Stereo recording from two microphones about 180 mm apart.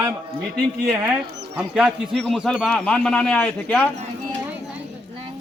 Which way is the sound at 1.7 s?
Centre (ahead or behind).